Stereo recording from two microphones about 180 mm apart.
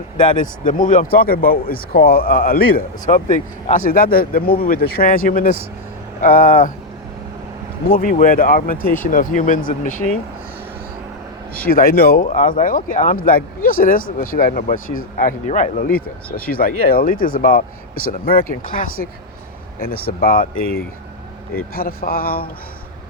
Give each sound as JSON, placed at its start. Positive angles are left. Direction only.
{"t": 0.3, "sound": "speech", "side_deg": 50}
{"t": 7.9, "sound": "speech", "side_deg": 50}
{"t": 11.6, "sound": "speech", "side_deg": 55}